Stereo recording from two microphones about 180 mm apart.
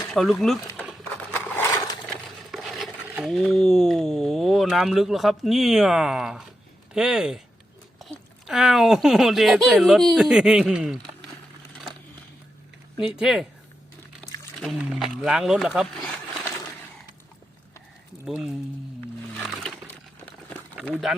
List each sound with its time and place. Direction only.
0.1 s speech: centre (ahead or behind)
1.1 s a sound: 10° left (ahead or behind)
2.5 s a sound: centre (ahead or behind)
3.3 s speech: 5° left (ahead or behind)
13.0 s speech: 5° right (ahead or behind)
14.6 s speech: centre (ahead or behind)
18.3 s speech: 5° right (ahead or behind)
19.3 s music: 5° left (ahead or behind)
20.8 s speech: 5° left (ahead or behind)